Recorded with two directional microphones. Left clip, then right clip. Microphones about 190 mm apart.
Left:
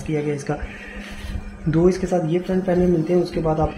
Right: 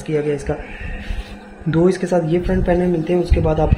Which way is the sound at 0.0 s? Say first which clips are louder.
Right 4 dB; 50° right (ahead or behind).